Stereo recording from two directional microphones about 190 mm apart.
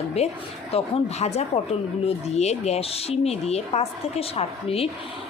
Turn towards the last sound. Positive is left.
turn(degrees=30)  # may be behind; listen again after turning